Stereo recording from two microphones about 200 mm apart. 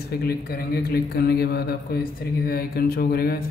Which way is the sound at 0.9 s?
50° left (ahead or behind).